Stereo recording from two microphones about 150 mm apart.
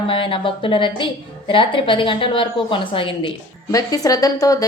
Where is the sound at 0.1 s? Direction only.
35° left (ahead or behind).